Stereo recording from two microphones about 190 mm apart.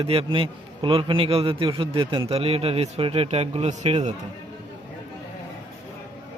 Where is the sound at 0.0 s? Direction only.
30° right (ahead or behind).